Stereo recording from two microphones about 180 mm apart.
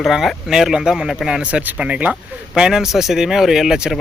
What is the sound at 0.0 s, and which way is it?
Speech, centre (ahead or behind).